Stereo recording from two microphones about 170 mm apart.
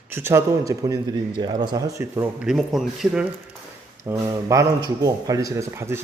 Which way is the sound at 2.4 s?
Centre (ahead or behind).